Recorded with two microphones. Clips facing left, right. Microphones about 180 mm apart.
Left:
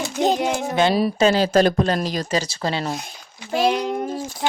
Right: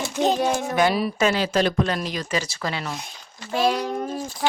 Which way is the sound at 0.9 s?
35° left (ahead or behind).